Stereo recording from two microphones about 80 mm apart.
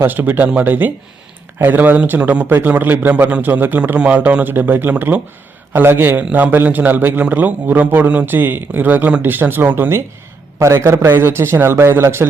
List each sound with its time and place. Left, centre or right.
0.0 s a man's voice: right
10.6 s a man's voice: right